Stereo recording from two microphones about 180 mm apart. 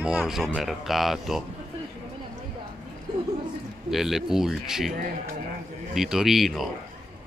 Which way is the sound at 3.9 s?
Centre (ahead or behind).